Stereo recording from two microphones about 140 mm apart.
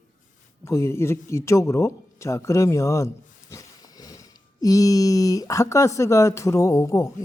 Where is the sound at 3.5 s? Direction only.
25° left (ahead or behind).